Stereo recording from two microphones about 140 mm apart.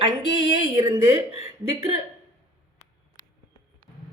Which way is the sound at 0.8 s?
25° right (ahead or behind).